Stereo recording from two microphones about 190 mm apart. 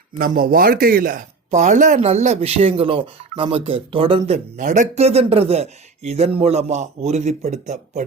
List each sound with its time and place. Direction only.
0.2 s speech: 50° right (ahead or behind); by 4.4 s 30° right (ahead or behind)
4.5 s speech: 40° right (ahead or behind)